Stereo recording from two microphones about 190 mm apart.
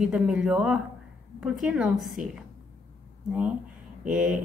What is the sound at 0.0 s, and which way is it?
A woman's voice, 5° right (ahead or behind).